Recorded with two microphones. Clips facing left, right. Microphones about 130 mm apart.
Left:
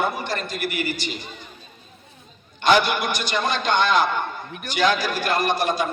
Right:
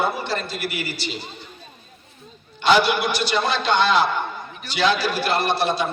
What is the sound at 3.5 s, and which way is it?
A man's voice, 50° left (ahead or behind).